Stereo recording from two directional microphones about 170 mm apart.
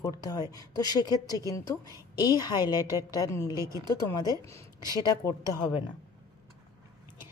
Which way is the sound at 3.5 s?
20° right (ahead or behind).